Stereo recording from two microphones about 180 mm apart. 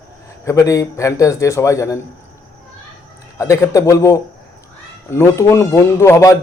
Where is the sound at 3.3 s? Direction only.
15° left (ahead or behind).